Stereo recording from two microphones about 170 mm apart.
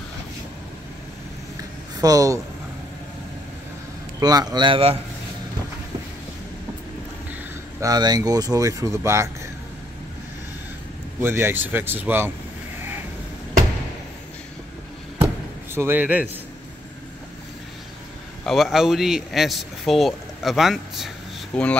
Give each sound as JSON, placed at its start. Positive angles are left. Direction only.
{"t": 2.0, "sound": "speech", "side_deg": -20}
{"t": 4.2, "sound": "speech", "side_deg": -20}
{"t": 7.8, "sound": "speech", "side_deg": -25}
{"t": 11.1, "sound": "speech", "side_deg": -15}
{"t": 15.2, "sound": "a sound", "side_deg": -15}
{"t": 18.4, "sound": "a man's voice", "side_deg": 0}